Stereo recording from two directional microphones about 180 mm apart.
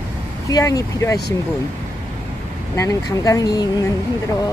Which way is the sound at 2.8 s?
20° left (ahead or behind).